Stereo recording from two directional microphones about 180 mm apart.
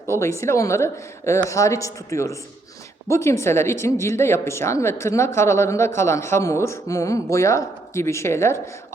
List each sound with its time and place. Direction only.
0.2 s speech: 15° left (ahead or behind)